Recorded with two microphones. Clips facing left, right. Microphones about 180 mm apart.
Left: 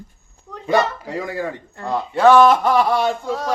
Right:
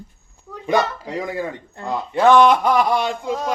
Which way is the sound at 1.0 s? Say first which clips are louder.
Even; 20° right (ahead or behind).